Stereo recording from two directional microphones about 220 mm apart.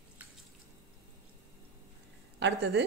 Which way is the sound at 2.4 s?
55° right (ahead or behind).